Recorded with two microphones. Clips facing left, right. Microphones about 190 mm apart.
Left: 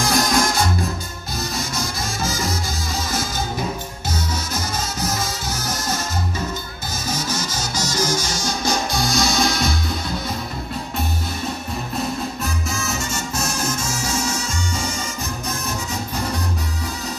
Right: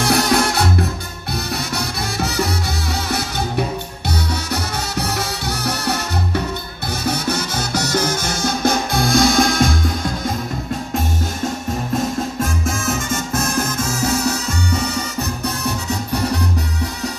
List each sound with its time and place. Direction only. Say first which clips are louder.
0.0 s music: right 3 dB; 65° right (ahead or behind)
5.0 s music: right 2 dB; 65° right (ahead or behind); by 10.3 s 50° right (ahead or behind)
12.4 s music: right 5 dB; 50° right (ahead or behind); by 16.2 s 65° right (ahead or behind)